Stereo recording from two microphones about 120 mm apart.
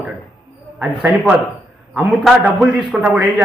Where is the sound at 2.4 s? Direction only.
5° right (ahead or behind).